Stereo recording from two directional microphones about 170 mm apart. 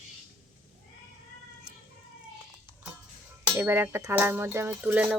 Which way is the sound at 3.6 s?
15° right (ahead or behind).